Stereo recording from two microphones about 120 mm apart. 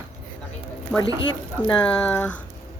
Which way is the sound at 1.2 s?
40° left (ahead or behind).